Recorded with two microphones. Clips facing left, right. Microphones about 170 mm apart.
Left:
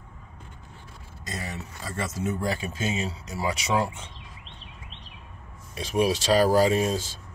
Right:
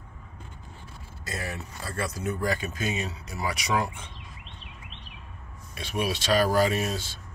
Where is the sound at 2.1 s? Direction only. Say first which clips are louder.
Left 1 dB; 25° left (ahead or behind).